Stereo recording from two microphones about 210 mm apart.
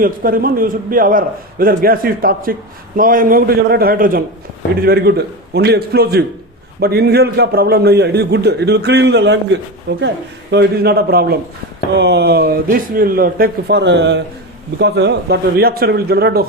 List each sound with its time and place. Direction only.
0.0 s a man's voice: 45° right (ahead or behind); by 10.0 s 60° right (ahead or behind)
10.5 s a man's voice: 50° right (ahead or behind)